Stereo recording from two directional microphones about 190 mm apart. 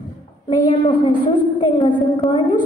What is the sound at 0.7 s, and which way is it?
A woman's voice, 25° left (ahead or behind).